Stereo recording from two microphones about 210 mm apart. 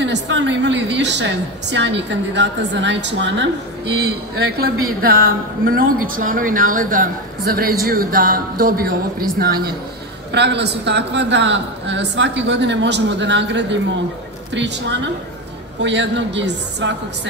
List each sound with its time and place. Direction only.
0.0 s a man's voice: 60° right (ahead or behind)